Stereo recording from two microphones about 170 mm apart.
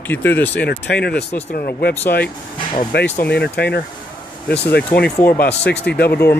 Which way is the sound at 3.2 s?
75° left (ahead or behind).